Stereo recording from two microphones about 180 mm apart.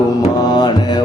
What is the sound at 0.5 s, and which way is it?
Music, 25° left (ahead or behind).